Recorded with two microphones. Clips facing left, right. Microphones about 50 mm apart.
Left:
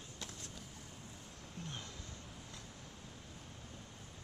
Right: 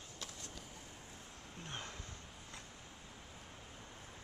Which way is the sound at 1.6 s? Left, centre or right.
Right.